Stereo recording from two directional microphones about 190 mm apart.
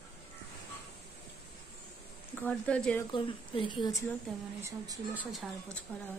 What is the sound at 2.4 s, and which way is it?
Speech, 5° left (ahead or behind).